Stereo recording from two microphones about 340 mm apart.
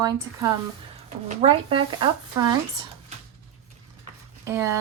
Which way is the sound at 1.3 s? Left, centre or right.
Centre.